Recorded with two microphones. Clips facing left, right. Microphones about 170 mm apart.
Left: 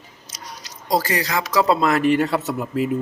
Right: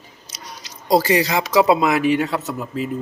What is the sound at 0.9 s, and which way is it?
Speech, 25° right (ahead or behind).